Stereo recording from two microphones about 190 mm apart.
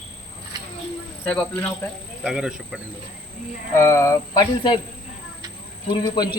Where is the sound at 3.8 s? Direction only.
15° left (ahead or behind).